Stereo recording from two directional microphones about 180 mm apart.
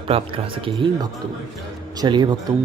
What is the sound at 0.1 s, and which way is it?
Speech, 30° right (ahead or behind).